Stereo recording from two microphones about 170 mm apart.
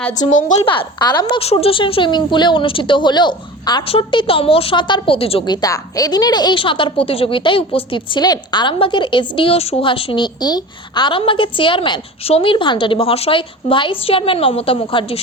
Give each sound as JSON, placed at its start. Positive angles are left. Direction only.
{"t": 0.3, "sound": "a woman's voice", "side_deg": 50}
{"t": 0.6, "sound": "a woman's voice", "side_deg": 30}
{"t": 5.6, "sound": "a woman's voice", "side_deg": 20}